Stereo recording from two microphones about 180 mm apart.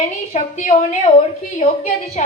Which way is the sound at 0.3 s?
45° left (ahead or behind).